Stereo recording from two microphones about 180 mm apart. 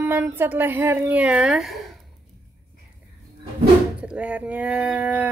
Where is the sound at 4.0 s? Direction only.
5° right (ahead or behind).